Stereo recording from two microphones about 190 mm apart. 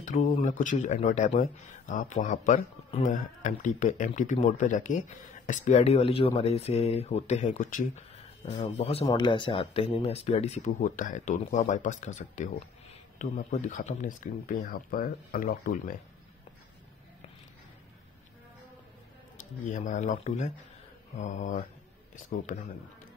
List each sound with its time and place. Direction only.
0.0 s speech: 40° left (ahead or behind)
19.7 s speech: 40° left (ahead or behind)